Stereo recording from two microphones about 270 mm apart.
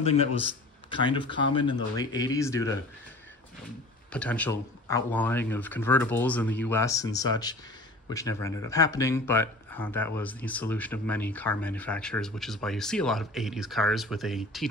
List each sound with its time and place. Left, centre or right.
0.8 s speech: centre
4.1 s speech: centre